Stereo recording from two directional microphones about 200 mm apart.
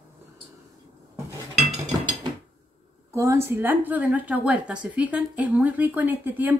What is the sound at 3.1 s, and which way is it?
Speech, 15° right (ahead or behind).